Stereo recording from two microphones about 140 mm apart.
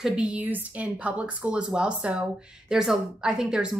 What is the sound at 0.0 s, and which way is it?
A woman's voice, 5° right (ahead or behind).